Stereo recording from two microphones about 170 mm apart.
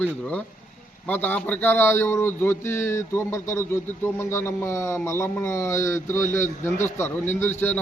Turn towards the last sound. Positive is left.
turn(degrees=15)  # may be behind; listen again after turning